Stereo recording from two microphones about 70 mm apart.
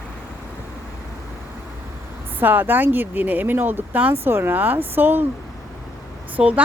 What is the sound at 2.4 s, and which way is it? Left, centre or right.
Speech, right.